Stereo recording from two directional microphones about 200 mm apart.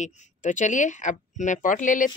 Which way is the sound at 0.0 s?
40° left (ahead or behind).